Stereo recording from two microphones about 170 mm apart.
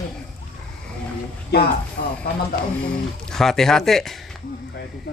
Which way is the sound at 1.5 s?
70° left (ahead or behind).